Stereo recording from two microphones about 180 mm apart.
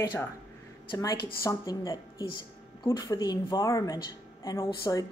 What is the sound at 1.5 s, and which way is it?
Speech, 20° left (ahead or behind).